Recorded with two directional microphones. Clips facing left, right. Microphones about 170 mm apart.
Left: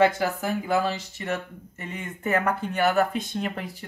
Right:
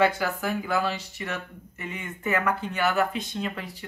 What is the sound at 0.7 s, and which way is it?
Speech, 40° left (ahead or behind).